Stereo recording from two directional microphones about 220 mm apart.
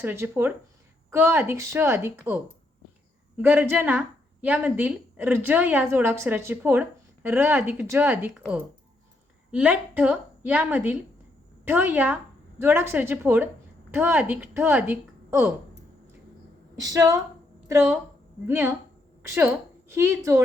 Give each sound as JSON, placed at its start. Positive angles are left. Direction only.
{"t": 0.0, "sound": "a woman's voice", "side_deg": -10}
{"t": 16.8, "sound": "a woman's voice", "side_deg": -15}
{"t": 18.4, "sound": "a woman's voice", "side_deg": -10}